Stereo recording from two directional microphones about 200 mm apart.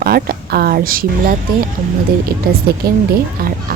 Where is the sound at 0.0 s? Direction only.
50° right (ahead or behind).